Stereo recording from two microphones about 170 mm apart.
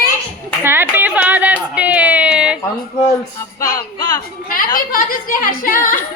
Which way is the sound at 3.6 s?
20° left (ahead or behind).